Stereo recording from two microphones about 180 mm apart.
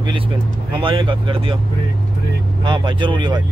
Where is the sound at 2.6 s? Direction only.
25° right (ahead or behind).